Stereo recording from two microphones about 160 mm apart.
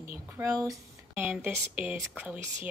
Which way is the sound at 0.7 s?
10° right (ahead or behind).